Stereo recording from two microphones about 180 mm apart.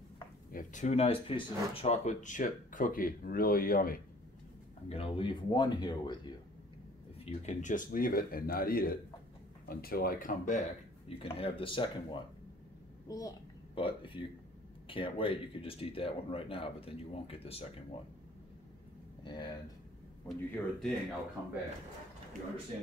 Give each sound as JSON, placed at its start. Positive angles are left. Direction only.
{"t": 0.5, "sound": "speech", "side_deg": 45}
{"t": 4.8, "sound": "speech", "side_deg": 35}
{"t": 7.2, "sound": "speech", "side_deg": 40}
{"t": 11.1, "sound": "speech", "side_deg": 30}
{"t": 13.7, "sound": "speech", "side_deg": 30}
{"t": 19.2, "sound": "speech", "side_deg": 25}
{"t": 20.2, "sound": "speech", "side_deg": 5}